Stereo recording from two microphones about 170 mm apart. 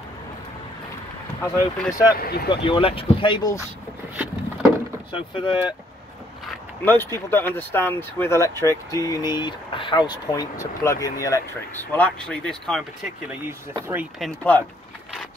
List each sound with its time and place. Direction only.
1.4 s speech: 15° left (ahead or behind)
2.1 s speech: 65° left (ahead or behind)
2.5 s speech: 30° left (ahead or behind)
5.1 s speech: 30° left (ahead or behind)
6.8 s speech: 10° left (ahead or behind)
13.7 s speech: 15° right (ahead or behind)
14.2 s speech: 10° left (ahead or behind)